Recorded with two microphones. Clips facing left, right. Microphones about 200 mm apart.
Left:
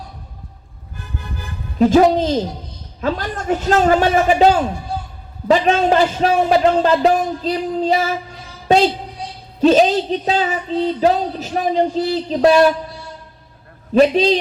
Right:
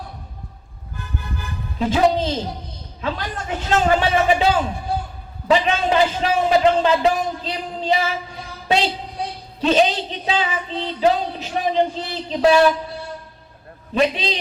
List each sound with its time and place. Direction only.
1.8 s a man's voice: 45° left (ahead or behind)
13.9 s speech: 40° left (ahead or behind)